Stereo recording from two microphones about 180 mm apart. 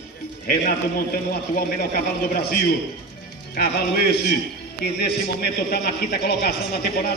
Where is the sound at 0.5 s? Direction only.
60° left (ahead or behind).